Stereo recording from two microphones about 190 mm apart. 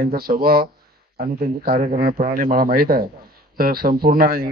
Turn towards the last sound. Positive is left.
turn(degrees=-50)  # may be behind; listen again after turning